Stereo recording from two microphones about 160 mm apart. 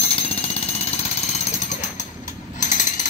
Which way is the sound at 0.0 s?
35° left (ahead or behind).